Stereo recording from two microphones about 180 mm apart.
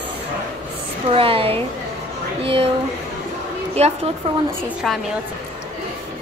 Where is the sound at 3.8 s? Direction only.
35° right (ahead or behind).